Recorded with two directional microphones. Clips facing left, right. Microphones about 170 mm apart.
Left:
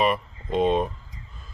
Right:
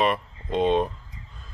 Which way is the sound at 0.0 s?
Centre (ahead or behind).